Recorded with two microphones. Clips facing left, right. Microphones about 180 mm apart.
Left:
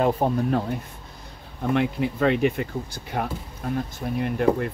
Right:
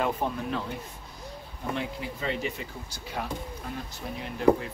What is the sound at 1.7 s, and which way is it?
Speech, 65° left (ahead or behind).